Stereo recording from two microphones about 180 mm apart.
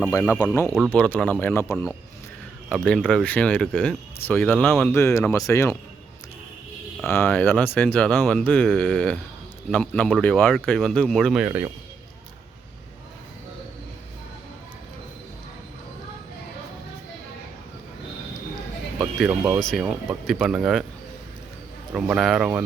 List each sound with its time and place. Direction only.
0.1 s speech: 15° left (ahead or behind)
1.7 s speech: centre (ahead or behind); by 5.7 s 15° left (ahead or behind)
7.1 s speech: 10° left (ahead or behind)
11.4 s a man's voice: 10° right (ahead or behind)
18.9 s speech: 5° right (ahead or behind)
21.9 s speech: 5° right (ahead or behind)